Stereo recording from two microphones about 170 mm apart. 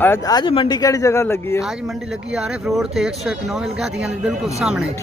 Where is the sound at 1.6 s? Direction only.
5° right (ahead or behind).